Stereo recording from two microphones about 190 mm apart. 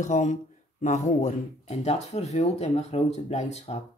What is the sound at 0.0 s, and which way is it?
Speech, 40° left (ahead or behind).